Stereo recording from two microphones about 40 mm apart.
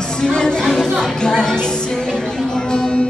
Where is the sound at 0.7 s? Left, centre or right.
Centre.